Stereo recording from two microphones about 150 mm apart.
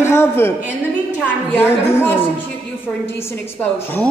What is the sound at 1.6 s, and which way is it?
Speech, 15° left (ahead or behind).